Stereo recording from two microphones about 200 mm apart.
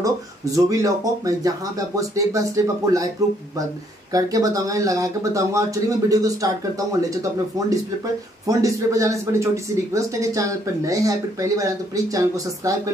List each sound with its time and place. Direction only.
0.0 s speech: 15° right (ahead or behind)
4.1 s speech: 15° right (ahead or behind)
8.5 s speech: 15° right (ahead or behind)